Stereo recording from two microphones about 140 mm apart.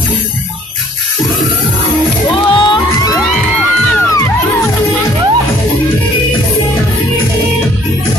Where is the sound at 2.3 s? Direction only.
35° left (ahead or behind).